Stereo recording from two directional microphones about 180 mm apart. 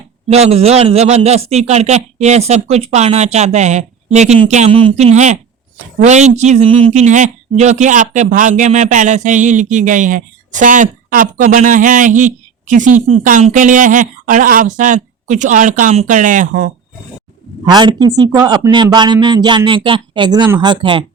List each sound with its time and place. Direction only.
0.3 s a man's voice: 35° right (ahead or behind)
17.7 s speech: 25° right (ahead or behind)